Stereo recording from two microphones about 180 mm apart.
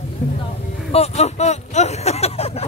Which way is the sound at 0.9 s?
35° left (ahead or behind).